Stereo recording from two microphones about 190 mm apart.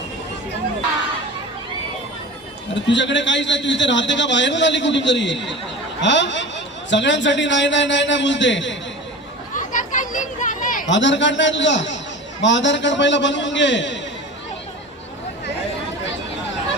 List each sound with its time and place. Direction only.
2.8 s a man's voice: 70° left (ahead or behind)
9.6 s children playing: 45° left (ahead or behind)
10.8 s a man's voice: 70° left (ahead or behind)